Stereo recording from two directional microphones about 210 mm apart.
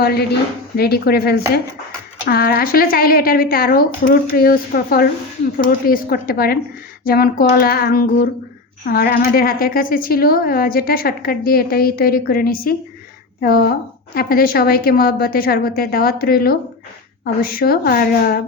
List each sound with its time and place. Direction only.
0.0 s a woman's voice: 50° left (ahead or behind)